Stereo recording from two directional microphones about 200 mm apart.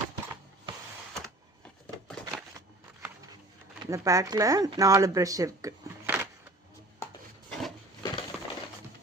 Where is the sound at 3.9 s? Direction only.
15° right (ahead or behind).